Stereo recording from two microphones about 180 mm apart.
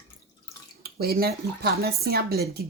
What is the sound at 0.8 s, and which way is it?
Speech, 60° right (ahead or behind).